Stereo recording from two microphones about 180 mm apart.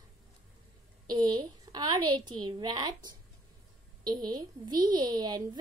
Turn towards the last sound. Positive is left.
turn(degrees=-20)  # may be behind; listen again after turning